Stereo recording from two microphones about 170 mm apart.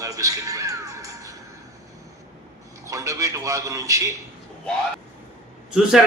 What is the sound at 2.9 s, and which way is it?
A man's voice, 20° right (ahead or behind).